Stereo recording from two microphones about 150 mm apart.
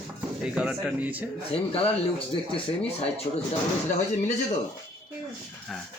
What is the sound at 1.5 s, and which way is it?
Speech, 40° left (ahead or behind).